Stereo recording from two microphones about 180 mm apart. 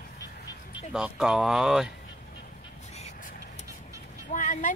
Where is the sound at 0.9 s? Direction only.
5° right (ahead or behind).